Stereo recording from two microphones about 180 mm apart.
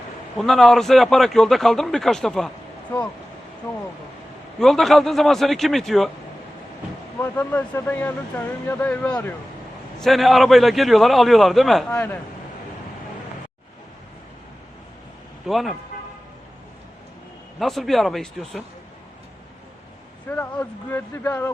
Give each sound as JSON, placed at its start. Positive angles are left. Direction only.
{"t": 0.3, "sound": "speech", "side_deg": 0}
{"t": 4.6, "sound": "speech", "side_deg": 0}
{"t": 7.2, "sound": "speech", "side_deg": 10}
{"t": 11.9, "sound": "speech", "side_deg": 15}
{"t": 15.4, "sound": "speech", "side_deg": 0}
{"t": 17.6, "sound": "speech", "side_deg": 0}
{"t": 20.2, "sound": "speech", "side_deg": 10}